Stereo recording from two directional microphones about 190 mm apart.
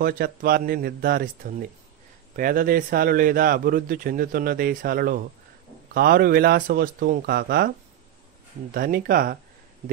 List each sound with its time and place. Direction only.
0.0 s a man's voice: 50° right (ahead or behind)
8.7 s a man's voice: 50° right (ahead or behind)